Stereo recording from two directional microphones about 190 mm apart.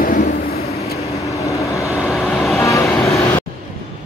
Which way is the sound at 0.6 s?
35° left (ahead or behind).